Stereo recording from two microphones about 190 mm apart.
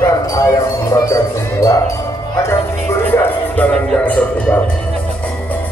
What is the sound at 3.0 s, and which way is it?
Music, 10° left (ahead or behind).